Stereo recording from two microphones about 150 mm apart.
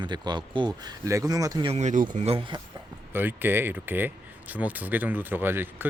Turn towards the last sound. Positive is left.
turn(degrees=-15)  # may be behind; listen again after turning